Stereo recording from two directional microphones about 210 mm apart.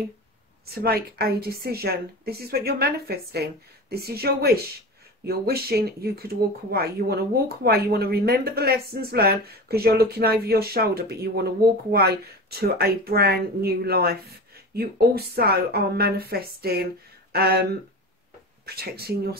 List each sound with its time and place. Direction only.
0.7 s speech: 45° right (ahead or behind)